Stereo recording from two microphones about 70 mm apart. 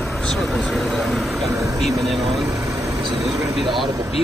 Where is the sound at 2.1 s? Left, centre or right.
Centre.